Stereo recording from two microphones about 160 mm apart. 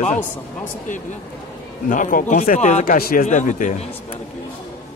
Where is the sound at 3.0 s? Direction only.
65° left (ahead or behind).